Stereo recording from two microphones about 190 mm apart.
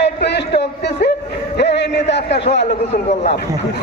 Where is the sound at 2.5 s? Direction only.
65° left (ahead or behind).